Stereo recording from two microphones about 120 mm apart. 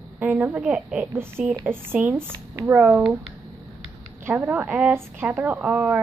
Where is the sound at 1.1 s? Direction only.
20° right (ahead or behind).